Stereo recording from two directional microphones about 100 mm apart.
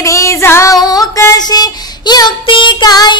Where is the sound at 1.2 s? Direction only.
35° left (ahead or behind).